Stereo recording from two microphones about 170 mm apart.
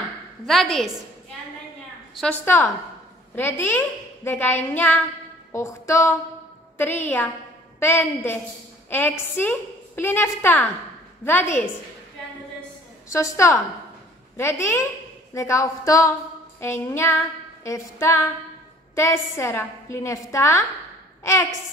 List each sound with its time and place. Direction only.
0.5 s a woman's voice: centre (ahead or behind)
2.1 s a woman's voice: 10° left (ahead or behind)
9.4 s a woman's voice: 10° left (ahead or behind)
13.1 s a woman's voice: 15° left (ahead or behind)